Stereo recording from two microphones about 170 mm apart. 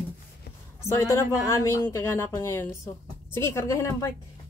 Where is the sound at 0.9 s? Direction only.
15° left (ahead or behind).